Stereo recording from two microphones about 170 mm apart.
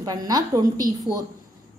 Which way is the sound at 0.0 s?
20° right (ahead or behind).